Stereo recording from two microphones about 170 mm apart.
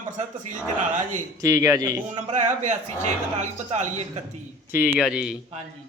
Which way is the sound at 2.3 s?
45° right (ahead or behind).